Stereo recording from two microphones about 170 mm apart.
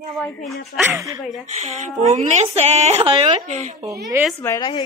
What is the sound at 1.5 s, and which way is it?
Speech, 45° right (ahead or behind).